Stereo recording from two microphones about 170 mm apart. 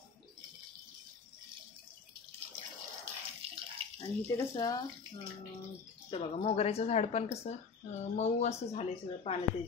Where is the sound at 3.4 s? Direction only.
35° right (ahead or behind).